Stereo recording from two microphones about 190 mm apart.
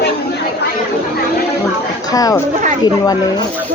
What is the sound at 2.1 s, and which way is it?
Speech, 20° left (ahead or behind).